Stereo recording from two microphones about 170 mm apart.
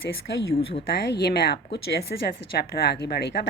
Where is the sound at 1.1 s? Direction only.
70° left (ahead or behind).